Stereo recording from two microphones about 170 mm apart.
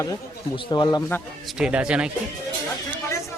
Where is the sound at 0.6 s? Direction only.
25° left (ahead or behind).